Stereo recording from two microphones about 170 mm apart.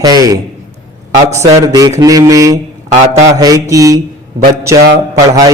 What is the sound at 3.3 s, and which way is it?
Speech, 20° right (ahead or behind).